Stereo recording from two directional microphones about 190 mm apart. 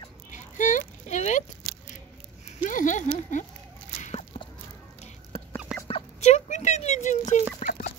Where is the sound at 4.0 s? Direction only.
35° left (ahead or behind).